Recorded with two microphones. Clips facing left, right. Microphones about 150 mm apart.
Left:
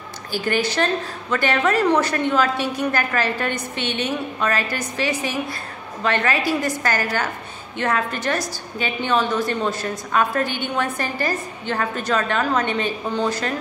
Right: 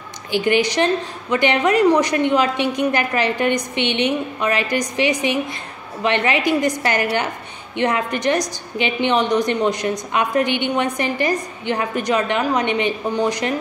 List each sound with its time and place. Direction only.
0.3 s a woman's voice: 15° right (ahead or behind)